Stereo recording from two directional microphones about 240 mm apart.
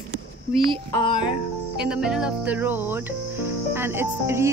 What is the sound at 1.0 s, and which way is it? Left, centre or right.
Speech, centre.